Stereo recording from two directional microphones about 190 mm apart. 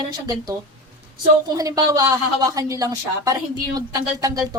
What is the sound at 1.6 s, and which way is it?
A woman's voice, 20° right (ahead or behind).